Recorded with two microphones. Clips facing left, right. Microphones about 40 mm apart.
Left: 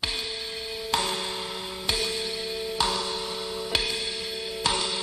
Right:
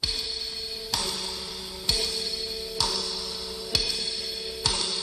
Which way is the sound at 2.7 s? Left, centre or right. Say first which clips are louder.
Left 3 dB; left.